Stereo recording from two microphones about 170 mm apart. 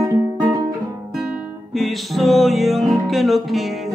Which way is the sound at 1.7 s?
Centre (ahead or behind).